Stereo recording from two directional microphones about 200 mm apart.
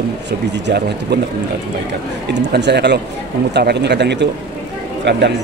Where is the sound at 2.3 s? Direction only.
60° right (ahead or behind).